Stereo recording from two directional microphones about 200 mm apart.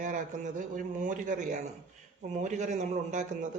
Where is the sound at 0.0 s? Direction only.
40° right (ahead or behind).